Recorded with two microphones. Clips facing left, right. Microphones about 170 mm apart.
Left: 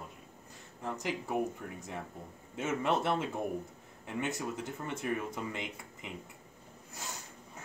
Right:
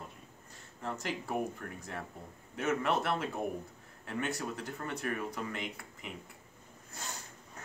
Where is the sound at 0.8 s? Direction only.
15° left (ahead or behind).